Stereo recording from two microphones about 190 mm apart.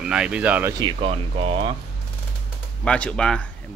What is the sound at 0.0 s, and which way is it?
Speech, 5° right (ahead or behind).